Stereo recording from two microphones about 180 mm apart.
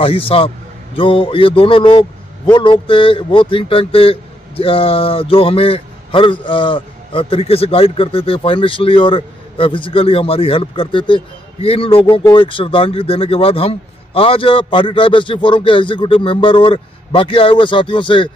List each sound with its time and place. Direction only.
0.0 s a man's voice: 30° left (ahead or behind)